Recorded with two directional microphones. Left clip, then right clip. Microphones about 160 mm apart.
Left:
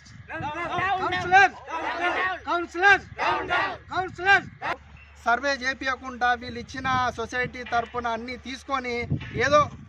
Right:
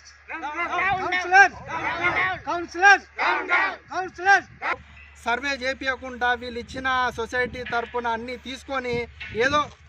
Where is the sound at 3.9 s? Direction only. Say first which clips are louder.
Even; 15° right (ahead or behind).